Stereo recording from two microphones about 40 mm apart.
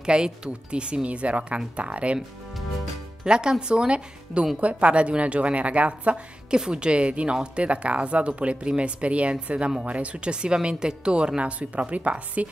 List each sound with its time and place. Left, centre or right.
0.0 s speech: right
3.3 s speech: right
6.5 s speech: right